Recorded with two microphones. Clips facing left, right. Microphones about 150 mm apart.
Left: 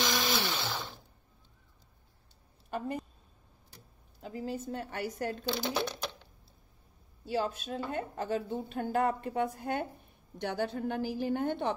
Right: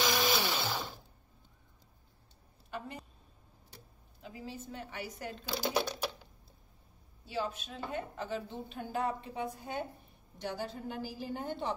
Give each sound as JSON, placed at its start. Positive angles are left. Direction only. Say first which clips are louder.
{"t": 0.0, "sound": "blender", "louder": "right 1 dB", "side_deg": -10}
{"t": 4.2, "sound": "a woman's voice", "louder": "left 7 dB", "side_deg": 45}
{"t": 5.5, "sound": "speech", "louder": "right 2 dB", "side_deg": -10}
{"t": 7.2, "sound": "a woman's voice", "louder": "left 5 dB", "side_deg": 45}